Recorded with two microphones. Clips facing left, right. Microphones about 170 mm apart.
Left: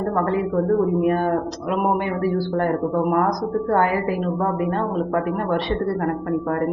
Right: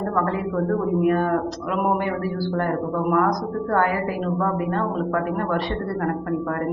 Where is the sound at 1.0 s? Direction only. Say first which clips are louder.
Even; 30° left (ahead or behind).